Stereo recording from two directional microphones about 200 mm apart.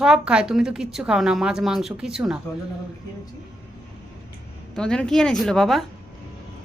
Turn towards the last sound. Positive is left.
turn(degrees=0)  # may be behind; listen again after turning